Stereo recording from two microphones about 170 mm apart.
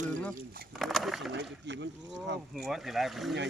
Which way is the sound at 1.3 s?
90° right.